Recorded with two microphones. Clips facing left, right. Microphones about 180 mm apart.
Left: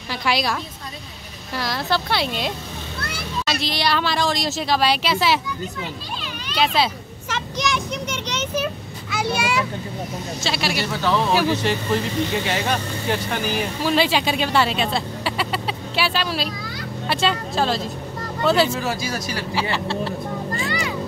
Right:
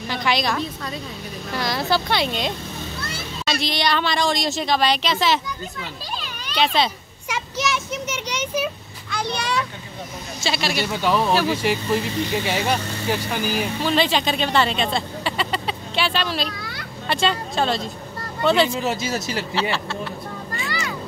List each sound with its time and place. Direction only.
0.1 s speech: 5° left (ahead or behind)
3.0 s vehicle: 65° left (ahead or behind)
3.4 s speech: centre (ahead or behind)
6.5 s speech: 5° left (ahead or behind)
7.2 s speech: 5° right (ahead or behind)
9.1 s a child's voice: 5° left (ahead or behind)
10.9 s speech: 15° right (ahead or behind); by 18.7 s centre (ahead or behind)
18.7 s speech: 20° right (ahead or behind)
19.9 s speech: 40° left (ahead or behind)